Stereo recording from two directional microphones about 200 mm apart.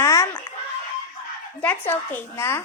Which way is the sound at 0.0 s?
15° left (ahead or behind).